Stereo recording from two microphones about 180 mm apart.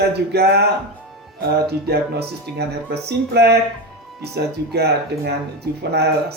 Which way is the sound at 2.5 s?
65° right (ahead or behind).